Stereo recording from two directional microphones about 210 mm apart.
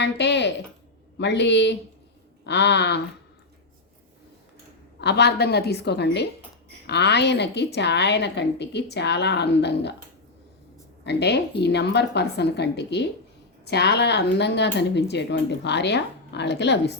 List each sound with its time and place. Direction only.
0.0 s a sound: 55° left (ahead or behind)
1.2 s a woman's voice: 55° left (ahead or behind)
4.9 s a woman's voice: 55° left (ahead or behind)
11.0 s a woman's voice: 55° left (ahead or behind)